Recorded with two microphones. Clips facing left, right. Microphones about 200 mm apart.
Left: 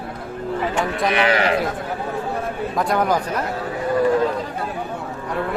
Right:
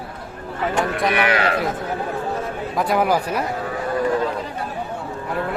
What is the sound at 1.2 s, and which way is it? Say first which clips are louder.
Speech: left 4 dB; 25° left (ahead or behind).